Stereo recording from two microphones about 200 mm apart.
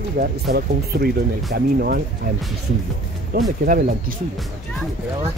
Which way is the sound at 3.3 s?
45° right (ahead or behind).